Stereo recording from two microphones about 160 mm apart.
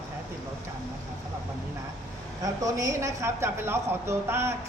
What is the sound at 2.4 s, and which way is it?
A woman's voice, 20° right (ahead or behind).